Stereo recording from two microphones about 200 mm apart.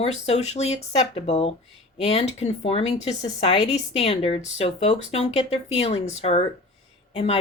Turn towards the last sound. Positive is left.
turn(degrees=30)  # may be behind; listen again after turning